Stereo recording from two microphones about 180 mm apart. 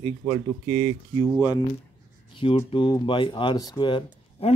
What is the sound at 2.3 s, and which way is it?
Speech, 30° left (ahead or behind).